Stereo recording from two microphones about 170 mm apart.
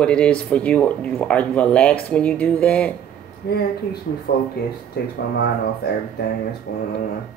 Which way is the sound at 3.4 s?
70° left (ahead or behind).